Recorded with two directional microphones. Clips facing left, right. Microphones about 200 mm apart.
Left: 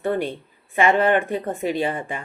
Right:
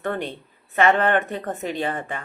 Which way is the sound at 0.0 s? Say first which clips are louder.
Left 4 dB; 10° left (ahead or behind).